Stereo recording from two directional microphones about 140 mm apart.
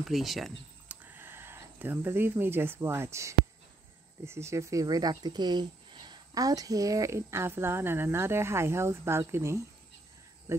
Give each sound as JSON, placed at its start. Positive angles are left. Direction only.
{"t": 0.0, "sound": "speech", "side_deg": 0}
{"t": 1.1, "sound": "speech", "side_deg": -15}